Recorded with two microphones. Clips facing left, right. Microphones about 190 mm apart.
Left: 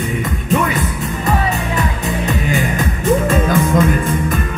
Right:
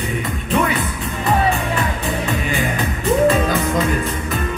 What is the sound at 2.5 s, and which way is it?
Music, 45° left (ahead or behind).